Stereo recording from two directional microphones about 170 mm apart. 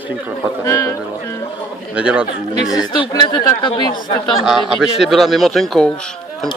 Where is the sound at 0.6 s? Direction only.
20° left (ahead or behind).